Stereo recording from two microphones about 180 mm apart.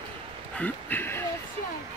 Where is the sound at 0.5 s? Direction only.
10° left (ahead or behind).